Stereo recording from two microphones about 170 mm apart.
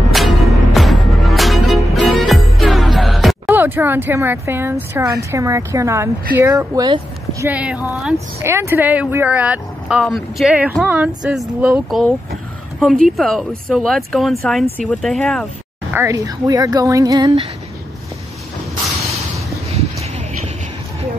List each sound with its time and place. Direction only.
0.1 s music: centre (ahead or behind)
3.5 s speech: 10° right (ahead or behind)
7.4 s speech: 10° right (ahead or behind)
13.1 s speech: centre (ahead or behind)
15.9 s speech: 15° right (ahead or behind)
19.7 s a sound: 40° right (ahead or behind)